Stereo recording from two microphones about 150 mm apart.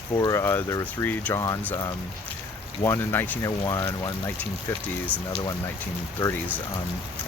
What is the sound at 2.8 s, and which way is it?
Speech, 15° left (ahead or behind).